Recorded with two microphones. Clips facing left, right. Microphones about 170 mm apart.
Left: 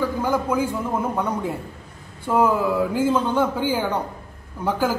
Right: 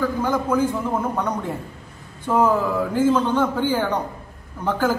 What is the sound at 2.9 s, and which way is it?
A man's voice, 10° left (ahead or behind).